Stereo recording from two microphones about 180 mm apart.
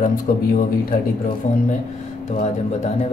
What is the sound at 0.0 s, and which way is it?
Speech, 50° left (ahead or behind).